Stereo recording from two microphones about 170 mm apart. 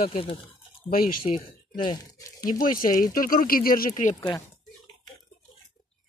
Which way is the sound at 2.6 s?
50° left (ahead or behind).